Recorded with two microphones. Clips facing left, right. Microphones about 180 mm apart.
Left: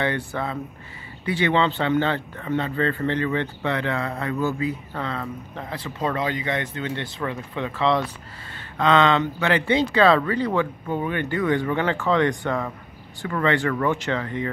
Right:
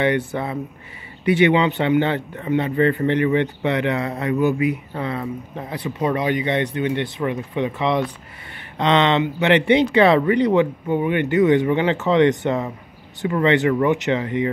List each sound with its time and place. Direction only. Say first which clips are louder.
0.0 s a man's voice: right 5 dB; 20° right (ahead or behind)